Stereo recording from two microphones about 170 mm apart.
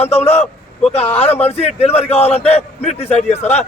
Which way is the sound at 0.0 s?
40° left (ahead or behind).